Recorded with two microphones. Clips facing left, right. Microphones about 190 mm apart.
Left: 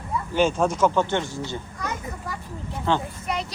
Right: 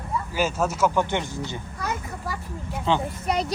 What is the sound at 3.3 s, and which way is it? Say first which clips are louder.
Speech: right 4 dB; 40° right (ahead or behind).